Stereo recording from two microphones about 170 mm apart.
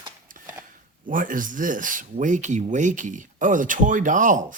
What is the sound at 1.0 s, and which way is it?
Speech, 50° right (ahead or behind).